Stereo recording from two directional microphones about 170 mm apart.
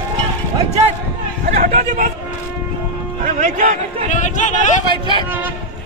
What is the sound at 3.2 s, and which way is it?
Speech, 50° right (ahead or behind).